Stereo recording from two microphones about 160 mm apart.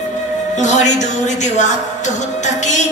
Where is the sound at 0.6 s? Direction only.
50° left (ahead or behind).